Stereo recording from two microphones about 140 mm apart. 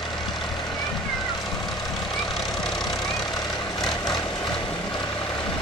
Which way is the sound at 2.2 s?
Centre (ahead or behind).